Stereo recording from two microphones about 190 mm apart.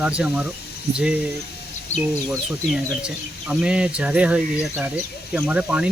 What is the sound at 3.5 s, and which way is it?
Speech, 5° right (ahead or behind).